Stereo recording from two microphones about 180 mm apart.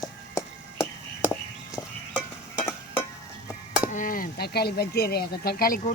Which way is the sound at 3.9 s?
45° left (ahead or behind).